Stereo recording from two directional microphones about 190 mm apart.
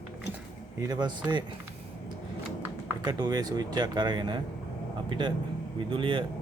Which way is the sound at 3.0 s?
20° right (ahead or behind).